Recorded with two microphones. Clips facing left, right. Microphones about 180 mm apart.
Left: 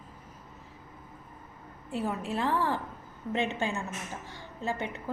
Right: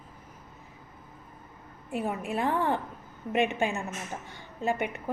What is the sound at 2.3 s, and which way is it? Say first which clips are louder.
A woman's voice: right 2 dB; 15° right (ahead or behind).